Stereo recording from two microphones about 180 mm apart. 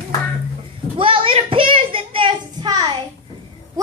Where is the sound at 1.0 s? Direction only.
30° right (ahead or behind).